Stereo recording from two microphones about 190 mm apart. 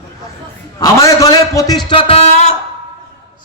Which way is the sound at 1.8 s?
30° left (ahead or behind).